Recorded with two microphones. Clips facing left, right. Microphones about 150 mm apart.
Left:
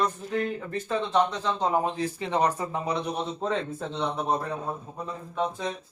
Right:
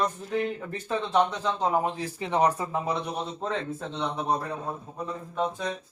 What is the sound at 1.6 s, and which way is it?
Speech, 10° right (ahead or behind).